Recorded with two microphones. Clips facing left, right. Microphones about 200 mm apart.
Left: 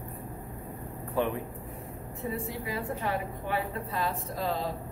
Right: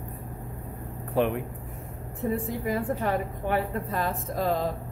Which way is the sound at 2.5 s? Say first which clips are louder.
Right 6 dB; 50° right (ahead or behind).